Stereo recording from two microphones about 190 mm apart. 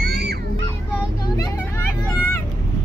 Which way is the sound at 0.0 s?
60° right (ahead or behind).